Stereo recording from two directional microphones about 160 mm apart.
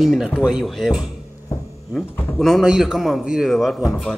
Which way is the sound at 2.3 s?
Centre (ahead or behind).